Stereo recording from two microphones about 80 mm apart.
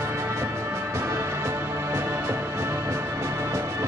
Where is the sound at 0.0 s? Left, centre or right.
Right.